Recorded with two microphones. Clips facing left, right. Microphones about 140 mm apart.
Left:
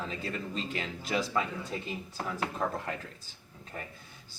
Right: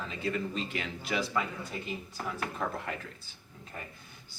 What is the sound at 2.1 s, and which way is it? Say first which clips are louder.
Speech: left 4 dB; 25° left (ahead or behind).